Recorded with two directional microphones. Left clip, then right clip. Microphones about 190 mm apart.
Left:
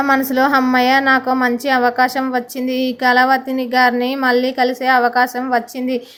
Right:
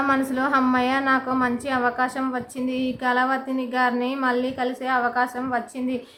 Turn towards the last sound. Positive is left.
turn(degrees=20)  # may be behind; listen again after turning